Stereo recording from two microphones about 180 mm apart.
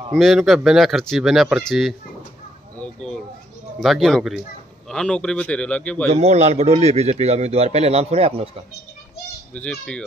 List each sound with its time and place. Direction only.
0.1 s speech: centre (ahead or behind)
2.8 s a sound: 5° left (ahead or behind)
3.8 s speech: centre (ahead or behind)
6.0 s a man's voice: 35° right (ahead or behind)
9.5 s speech: 5° left (ahead or behind)